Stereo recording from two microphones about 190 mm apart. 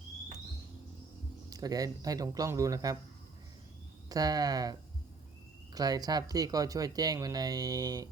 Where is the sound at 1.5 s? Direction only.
20° right (ahead or behind).